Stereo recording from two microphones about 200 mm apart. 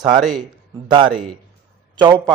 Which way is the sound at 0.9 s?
25° right (ahead or behind).